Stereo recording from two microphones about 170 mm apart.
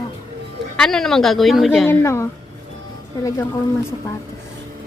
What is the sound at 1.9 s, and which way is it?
Speech, 15° left (ahead or behind).